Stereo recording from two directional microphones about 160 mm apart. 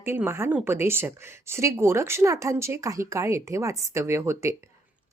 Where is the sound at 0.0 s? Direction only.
15° right (ahead or behind).